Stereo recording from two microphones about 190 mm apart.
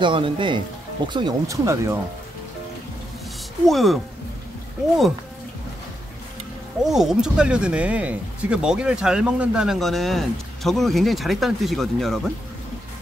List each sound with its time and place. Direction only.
0.0 s speech: 25° right (ahead or behind)
3.6 s speech: centre (ahead or behind)
6.8 s speech: centre (ahead or behind)